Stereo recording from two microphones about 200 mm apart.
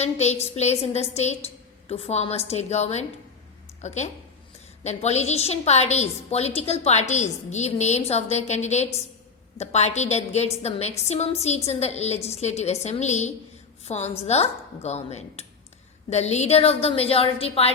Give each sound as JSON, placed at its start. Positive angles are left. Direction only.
{"t": 0.0, "sound": "a woman's voice", "side_deg": 35}